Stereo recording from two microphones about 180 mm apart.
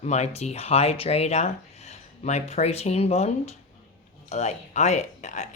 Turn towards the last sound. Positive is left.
turn(degrees=40)  # may be behind; listen again after turning